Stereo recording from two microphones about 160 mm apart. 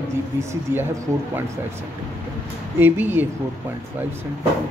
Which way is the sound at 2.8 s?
15° right (ahead or behind).